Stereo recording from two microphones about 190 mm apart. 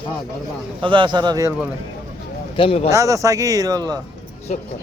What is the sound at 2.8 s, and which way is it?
Speech, 15° right (ahead or behind).